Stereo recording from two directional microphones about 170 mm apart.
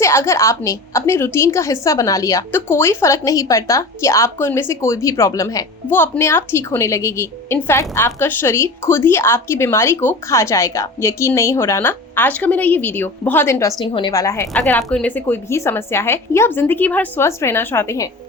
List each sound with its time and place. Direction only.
0.0 s a woman's voice: 15° left (ahead or behind)
14.5 s a woman's voice: 5° left (ahead or behind)